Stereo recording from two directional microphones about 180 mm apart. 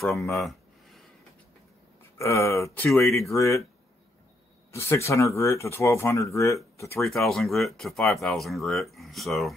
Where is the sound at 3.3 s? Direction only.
15° left (ahead or behind).